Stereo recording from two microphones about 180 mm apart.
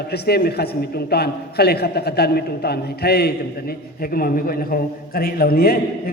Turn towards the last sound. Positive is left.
turn(degrees=55)  # may be behind; listen again after turning